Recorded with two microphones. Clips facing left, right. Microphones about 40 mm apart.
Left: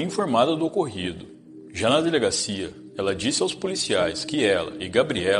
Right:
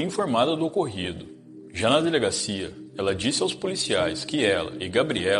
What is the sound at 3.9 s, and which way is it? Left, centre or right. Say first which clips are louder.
A man's voice: left 2 dB; centre.